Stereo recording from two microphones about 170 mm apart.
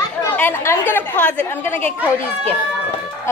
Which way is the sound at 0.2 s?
15° left (ahead or behind).